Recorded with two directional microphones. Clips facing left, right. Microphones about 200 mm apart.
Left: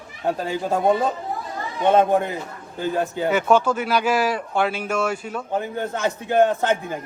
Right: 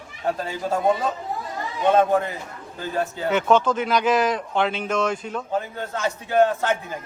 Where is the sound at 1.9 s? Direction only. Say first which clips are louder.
Left 1 dB; 15° left (ahead or behind).